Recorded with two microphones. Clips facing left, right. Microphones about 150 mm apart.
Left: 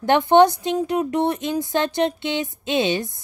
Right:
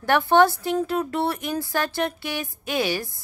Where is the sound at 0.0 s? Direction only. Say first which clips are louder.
Left 3 dB; 20° left (ahead or behind).